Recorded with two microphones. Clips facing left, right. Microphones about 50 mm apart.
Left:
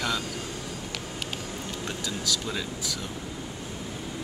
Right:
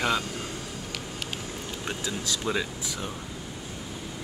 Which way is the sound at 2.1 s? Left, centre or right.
Right.